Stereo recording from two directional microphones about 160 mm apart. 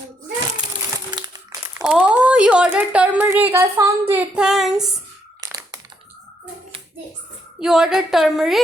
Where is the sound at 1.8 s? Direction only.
5° right (ahead or behind).